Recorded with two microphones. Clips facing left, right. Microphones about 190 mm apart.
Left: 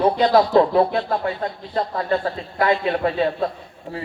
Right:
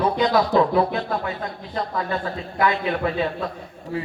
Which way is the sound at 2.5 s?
35° left (ahead or behind).